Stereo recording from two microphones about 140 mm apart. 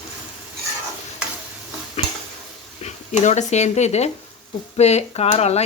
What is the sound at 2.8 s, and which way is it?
Speech, 55° left (ahead or behind).